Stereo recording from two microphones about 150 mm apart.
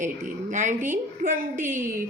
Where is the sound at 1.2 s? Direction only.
70° right (ahead or behind).